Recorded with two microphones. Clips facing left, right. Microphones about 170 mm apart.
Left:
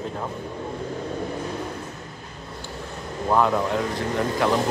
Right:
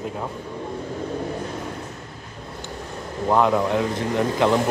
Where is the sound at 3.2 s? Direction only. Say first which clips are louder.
Right 2 dB; 15° right (ahead or behind).